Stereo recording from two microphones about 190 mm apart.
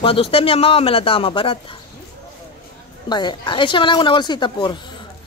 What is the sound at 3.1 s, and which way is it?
Speech, 25° left (ahead or behind).